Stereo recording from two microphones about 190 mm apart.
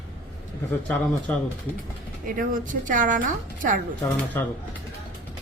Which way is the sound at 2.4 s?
45° right (ahead or behind).